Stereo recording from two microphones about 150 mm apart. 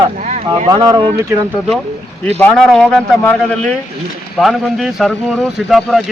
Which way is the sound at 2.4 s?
5° left (ahead or behind).